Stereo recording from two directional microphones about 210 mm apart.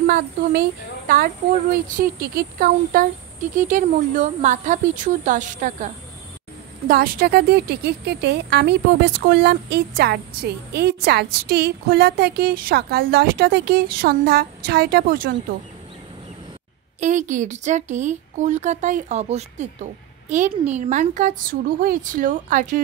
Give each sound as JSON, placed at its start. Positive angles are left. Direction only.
{"t": 0.0, "sound": "speech", "side_deg": -45}
{"t": 6.9, "sound": "speech", "side_deg": -45}
{"t": 17.0, "sound": "speech", "side_deg": -35}